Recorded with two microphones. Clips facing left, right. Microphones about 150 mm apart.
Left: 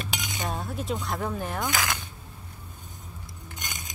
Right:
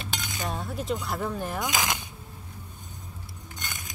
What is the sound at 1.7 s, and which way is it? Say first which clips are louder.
Speech: right 1 dB; 20° right (ahead or behind).